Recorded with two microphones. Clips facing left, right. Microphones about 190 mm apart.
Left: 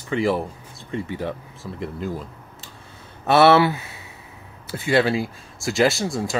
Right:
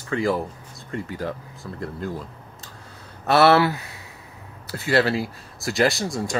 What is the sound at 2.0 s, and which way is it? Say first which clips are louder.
Speech: left 2 dB; 20° left (ahead or behind).